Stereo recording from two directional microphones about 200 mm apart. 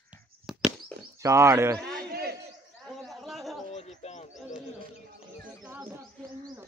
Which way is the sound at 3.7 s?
35° left (ahead or behind).